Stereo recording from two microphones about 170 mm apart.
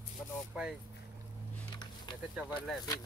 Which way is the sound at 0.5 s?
5° right (ahead or behind).